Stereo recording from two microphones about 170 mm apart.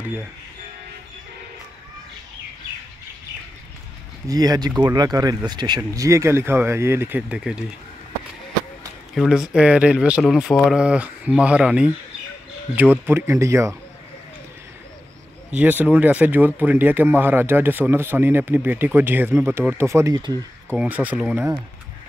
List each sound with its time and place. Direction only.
4.3 s speech: 20° right (ahead or behind); by 7.6 s 5° right (ahead or behind)
9.1 s speech: 5° right (ahead or behind)
15.5 s speech: 10° right (ahead or behind)
20.7 s speech: 5° right (ahead or behind)